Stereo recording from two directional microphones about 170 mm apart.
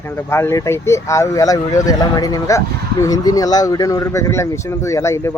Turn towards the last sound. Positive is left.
turn(degrees=15)  # may be behind; listen again after turning